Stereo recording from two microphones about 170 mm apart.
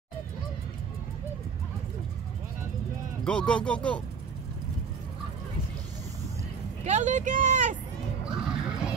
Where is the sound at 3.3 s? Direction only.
5° left (ahead or behind).